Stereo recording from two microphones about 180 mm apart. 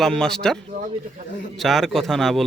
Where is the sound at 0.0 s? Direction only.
5° left (ahead or behind).